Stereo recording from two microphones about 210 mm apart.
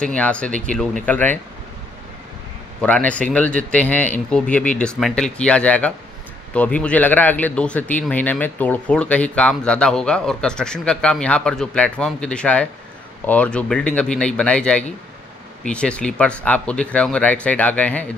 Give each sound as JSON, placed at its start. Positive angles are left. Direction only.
{"t": 0.1, "sound": "speech", "side_deg": 5}
{"t": 2.8, "sound": "speech", "side_deg": 5}